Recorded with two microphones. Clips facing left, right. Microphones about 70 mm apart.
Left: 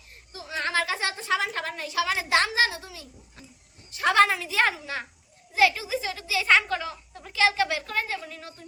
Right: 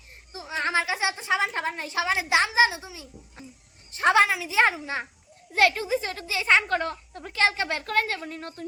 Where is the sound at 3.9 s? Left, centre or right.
Right.